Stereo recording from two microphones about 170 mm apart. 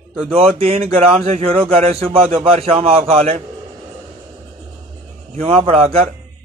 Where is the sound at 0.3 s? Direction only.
35° right (ahead or behind).